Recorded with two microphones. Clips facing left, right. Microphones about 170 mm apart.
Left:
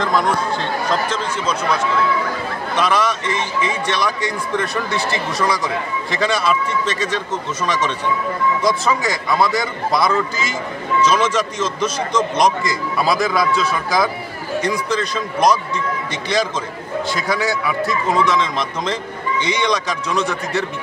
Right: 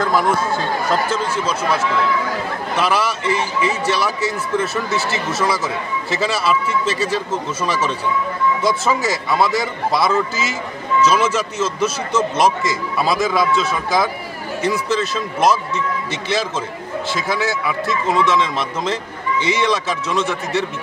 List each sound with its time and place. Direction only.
0.0 s a man's voice: 5° right (ahead or behind)